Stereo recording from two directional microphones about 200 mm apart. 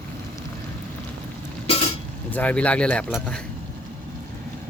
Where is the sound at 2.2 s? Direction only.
5° left (ahead or behind).